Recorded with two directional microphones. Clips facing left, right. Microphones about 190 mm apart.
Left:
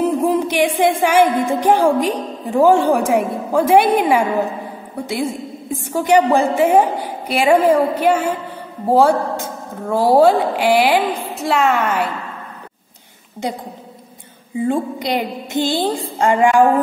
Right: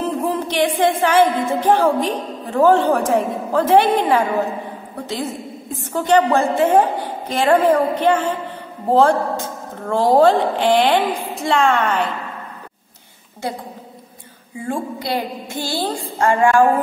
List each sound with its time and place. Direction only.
0.0 s music: 15° left (ahead or behind)
14.6 s music: 20° left (ahead or behind)